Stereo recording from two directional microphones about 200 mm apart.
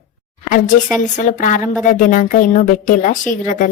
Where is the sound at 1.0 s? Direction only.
35° left (ahead or behind).